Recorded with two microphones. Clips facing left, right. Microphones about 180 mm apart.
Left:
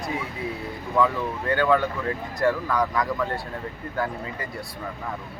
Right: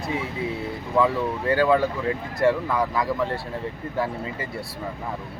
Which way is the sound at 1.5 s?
30° right (ahead or behind).